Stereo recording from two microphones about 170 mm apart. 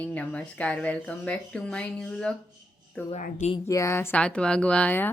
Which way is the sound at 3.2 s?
50° left (ahead or behind).